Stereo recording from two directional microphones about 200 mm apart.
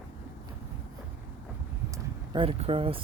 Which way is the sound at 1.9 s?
25° right (ahead or behind).